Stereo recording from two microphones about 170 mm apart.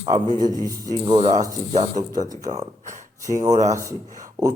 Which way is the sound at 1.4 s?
45° right (ahead or behind).